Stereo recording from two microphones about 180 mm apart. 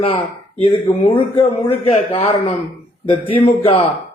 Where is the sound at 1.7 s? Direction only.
35° left (ahead or behind).